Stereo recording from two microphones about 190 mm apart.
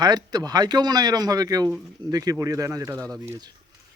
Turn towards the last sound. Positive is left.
turn(degrees=-15)  # may be behind; listen again after turning